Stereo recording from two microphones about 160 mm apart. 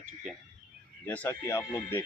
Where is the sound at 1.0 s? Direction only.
10° left (ahead or behind).